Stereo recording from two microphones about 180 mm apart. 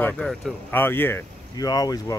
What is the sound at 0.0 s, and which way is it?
Speech, 10° left (ahead or behind).